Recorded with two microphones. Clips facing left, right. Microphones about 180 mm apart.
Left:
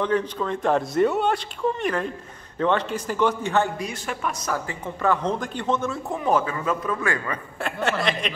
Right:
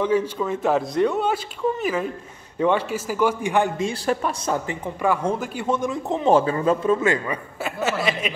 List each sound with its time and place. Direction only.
0.0 s a man's voice: 10° right (ahead or behind); by 4.7 s 25° right (ahead or behind)
5.0 s a man's voice: 10° right (ahead or behind)
7.6 s a man's voice: 5° right (ahead or behind)